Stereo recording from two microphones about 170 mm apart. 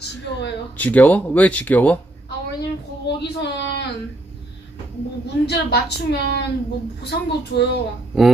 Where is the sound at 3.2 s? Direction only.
85° left.